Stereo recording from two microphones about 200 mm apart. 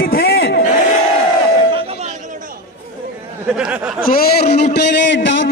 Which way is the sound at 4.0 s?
45° left (ahead or behind).